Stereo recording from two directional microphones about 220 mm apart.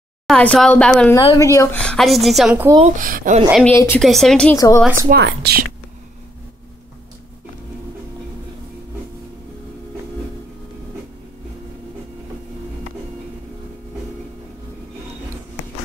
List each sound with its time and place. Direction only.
0.3 s a woman's voice: 5° left (ahead or behind)
1.3 s speech: 15° left (ahead or behind)
1.8 s a woman's voice: centre (ahead or behind)
2.8 s speech: 40° right (ahead or behind)
3.6 s a woman's voice: 10° left (ahead or behind)
4.6 s speech: 15° left (ahead or behind)
5.1 s speech: 50° right (ahead or behind)